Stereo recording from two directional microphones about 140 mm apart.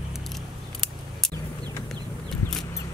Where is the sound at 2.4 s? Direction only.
15° left (ahead or behind).